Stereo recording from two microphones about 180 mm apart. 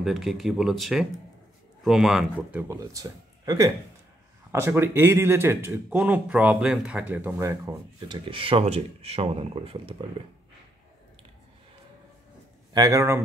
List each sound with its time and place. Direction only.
0.0 s speech: centre (ahead or behind)
2.7 s speech: 20° right (ahead or behind)
12.7 s speech: 20° right (ahead or behind)